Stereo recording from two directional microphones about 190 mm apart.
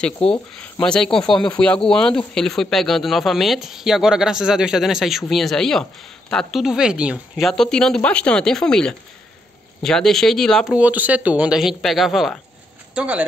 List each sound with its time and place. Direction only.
0.2 s speech: 5° left (ahead or behind)
1.2 s speech: 25° left (ahead or behind)
1.6 s speech: 5° left (ahead or behind)